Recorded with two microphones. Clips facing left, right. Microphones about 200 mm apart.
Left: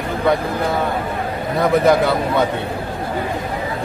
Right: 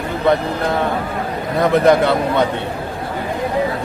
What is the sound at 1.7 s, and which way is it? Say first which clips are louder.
Speech: right 2 dB; centre (ahead or behind).